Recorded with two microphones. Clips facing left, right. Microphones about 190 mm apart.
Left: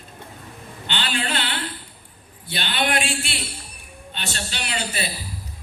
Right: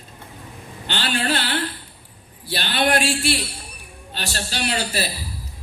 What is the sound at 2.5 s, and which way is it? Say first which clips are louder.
Speech: right 4 dB; 40° right (ahead or behind).